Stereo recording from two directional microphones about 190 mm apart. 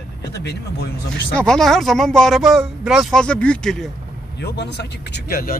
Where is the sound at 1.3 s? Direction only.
5° left (ahead or behind).